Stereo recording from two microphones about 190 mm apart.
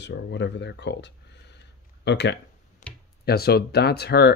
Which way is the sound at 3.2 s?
55° left (ahead or behind).